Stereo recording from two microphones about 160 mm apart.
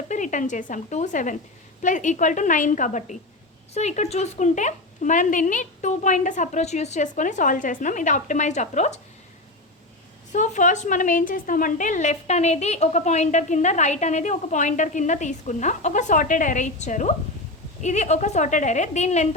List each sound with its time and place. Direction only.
0.1 s a woman's voice: 50° left (ahead or behind)
10.3 s a woman's voice: 50° left (ahead or behind)